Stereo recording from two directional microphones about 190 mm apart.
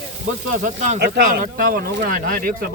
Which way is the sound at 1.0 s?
55° right (ahead or behind).